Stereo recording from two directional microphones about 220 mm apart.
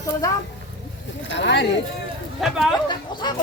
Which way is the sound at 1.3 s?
55° left (ahead or behind).